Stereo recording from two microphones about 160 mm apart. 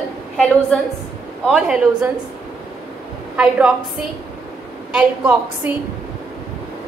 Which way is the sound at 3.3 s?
5° right (ahead or behind).